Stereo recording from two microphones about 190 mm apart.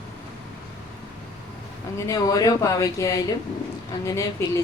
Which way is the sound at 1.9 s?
15° left (ahead or behind).